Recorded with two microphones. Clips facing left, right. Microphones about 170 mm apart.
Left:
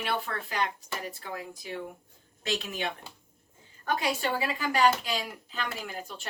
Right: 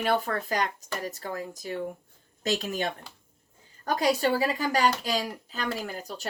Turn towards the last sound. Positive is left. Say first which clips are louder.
# right 4 dB
turn(degrees=-40)  # may be behind; listen again after turning